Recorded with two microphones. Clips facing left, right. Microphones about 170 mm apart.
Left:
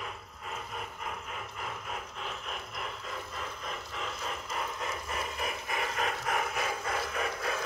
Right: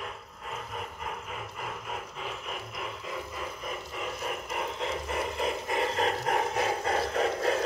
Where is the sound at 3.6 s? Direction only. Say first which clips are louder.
Right 4 dB; 15° right (ahead or behind).